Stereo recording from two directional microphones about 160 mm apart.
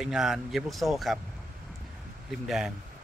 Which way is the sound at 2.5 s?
Centre (ahead or behind).